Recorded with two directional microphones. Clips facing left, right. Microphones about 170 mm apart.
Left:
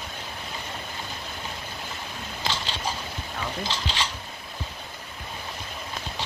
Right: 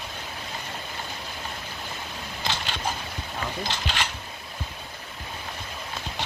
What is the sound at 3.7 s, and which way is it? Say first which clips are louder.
Speech: even; 55° right (ahead or behind).